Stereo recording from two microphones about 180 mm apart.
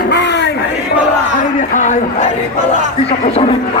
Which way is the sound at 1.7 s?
45° left (ahead or behind).